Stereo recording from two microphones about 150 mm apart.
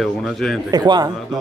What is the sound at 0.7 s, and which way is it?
Speech, 25° right (ahead or behind).